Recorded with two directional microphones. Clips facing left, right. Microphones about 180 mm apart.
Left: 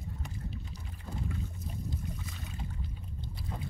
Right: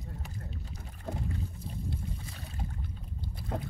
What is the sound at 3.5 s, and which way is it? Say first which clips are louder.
Boat: right 6 dB; 70° right (ahead or behind).